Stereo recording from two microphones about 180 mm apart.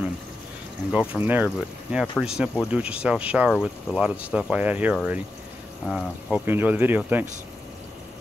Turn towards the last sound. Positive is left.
turn(degrees=-10)  # may be behind; listen again after turning